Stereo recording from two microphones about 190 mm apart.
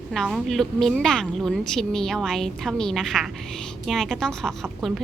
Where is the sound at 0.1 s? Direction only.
Centre (ahead or behind).